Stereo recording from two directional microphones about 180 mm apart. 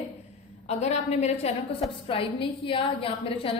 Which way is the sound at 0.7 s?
40° left (ahead or behind).